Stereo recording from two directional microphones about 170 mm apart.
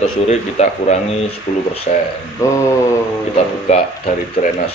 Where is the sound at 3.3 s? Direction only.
40° left (ahead or behind).